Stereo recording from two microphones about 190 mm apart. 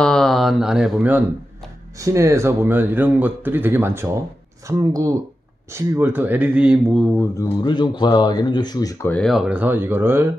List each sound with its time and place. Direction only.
0.0 s speech: centre (ahead or behind)
7.2 s speech: 10° left (ahead or behind)
7.6 s speech: 25° left (ahead or behind); by 10.3 s 10° right (ahead or behind)